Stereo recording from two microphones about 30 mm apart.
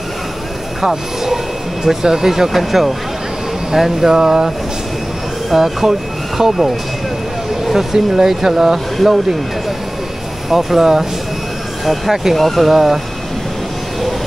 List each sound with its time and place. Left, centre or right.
0.7 s speech: centre
5.5 s speech: centre
7.7 s speech: centre
10.5 s speech: centre
12.1 s speech: centre
12.4 s speech: centre
12.6 s speech: centre